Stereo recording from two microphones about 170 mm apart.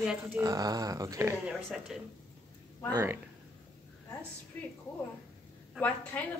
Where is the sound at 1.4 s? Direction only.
5° right (ahead or behind).